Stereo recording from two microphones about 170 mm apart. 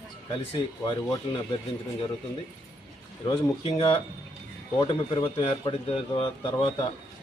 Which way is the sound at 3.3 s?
30° left (ahead or behind).